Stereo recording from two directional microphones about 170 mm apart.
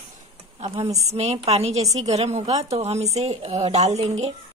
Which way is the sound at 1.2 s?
40° right (ahead or behind).